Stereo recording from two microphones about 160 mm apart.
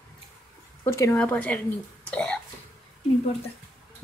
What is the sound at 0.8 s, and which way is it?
Speech, 20° left (ahead or behind).